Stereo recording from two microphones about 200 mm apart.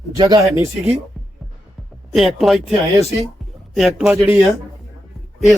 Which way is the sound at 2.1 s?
Centre (ahead or behind).